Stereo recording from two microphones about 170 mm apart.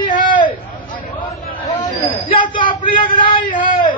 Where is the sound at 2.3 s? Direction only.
30° left (ahead or behind).